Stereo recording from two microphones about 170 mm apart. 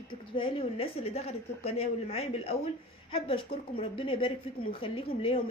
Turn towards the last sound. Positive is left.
turn(degrees=35)  # may be behind; listen again after turning